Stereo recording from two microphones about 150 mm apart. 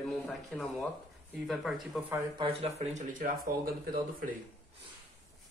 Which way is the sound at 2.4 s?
45° right (ahead or behind).